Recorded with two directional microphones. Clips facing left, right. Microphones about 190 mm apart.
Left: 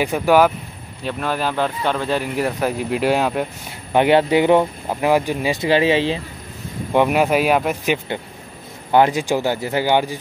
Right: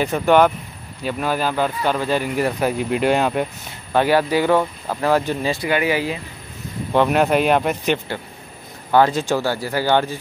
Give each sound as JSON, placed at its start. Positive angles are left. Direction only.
{"t": 0.0, "sound": "speech", "side_deg": 10}
{"t": 3.9, "sound": "speech", "side_deg": 20}
{"t": 5.6, "sound": "speech", "side_deg": 25}
{"t": 6.9, "sound": "speech", "side_deg": 10}